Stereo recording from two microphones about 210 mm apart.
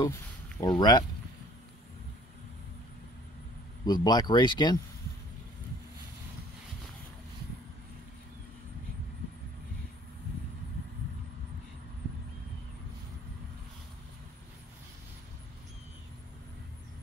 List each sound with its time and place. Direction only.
0.0 s speech: 15° left (ahead or behind)
3.8 s speech: 20° left (ahead or behind)